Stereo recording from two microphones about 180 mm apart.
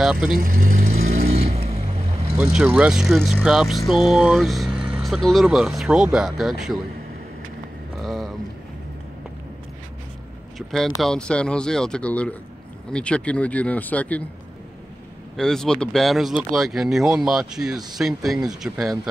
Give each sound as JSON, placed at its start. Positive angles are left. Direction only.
{"t": 0.0, "sound": "speech", "side_deg": -5}
{"t": 0.4, "sound": "vehicle", "side_deg": -50}
{"t": 2.3, "sound": "speech", "side_deg": -5}
{"t": 8.0, "sound": "a sound", "side_deg": 0}
{"t": 11.0, "sound": "speech", "side_deg": 5}
{"t": 15.3, "sound": "speech", "side_deg": 5}